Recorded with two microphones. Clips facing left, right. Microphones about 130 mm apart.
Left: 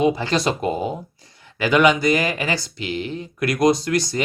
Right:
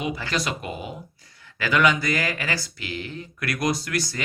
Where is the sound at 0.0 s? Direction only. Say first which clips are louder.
Left 9 dB; 25° left (ahead or behind).